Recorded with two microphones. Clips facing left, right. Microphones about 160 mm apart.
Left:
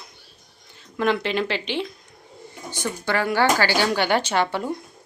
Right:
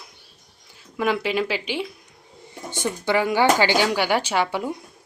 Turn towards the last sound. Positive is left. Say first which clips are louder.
# even
turn(degrees=-10)  # may be behind; listen again after turning